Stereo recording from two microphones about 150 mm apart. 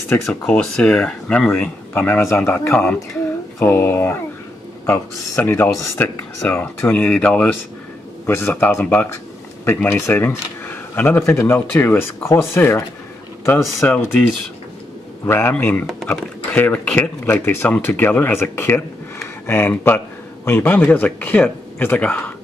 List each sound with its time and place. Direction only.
0.2 s speech: 5° left (ahead or behind)